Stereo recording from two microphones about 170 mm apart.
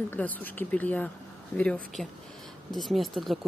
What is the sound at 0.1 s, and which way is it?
Speech, 10° left (ahead or behind).